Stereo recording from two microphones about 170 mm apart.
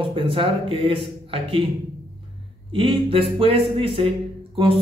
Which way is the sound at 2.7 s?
30° right (ahead or behind).